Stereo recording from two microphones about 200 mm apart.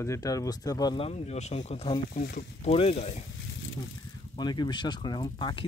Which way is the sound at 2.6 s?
30° left (ahead or behind).